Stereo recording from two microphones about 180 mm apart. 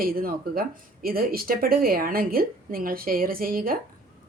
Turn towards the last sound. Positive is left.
turn(degrees=-50)  # may be behind; listen again after turning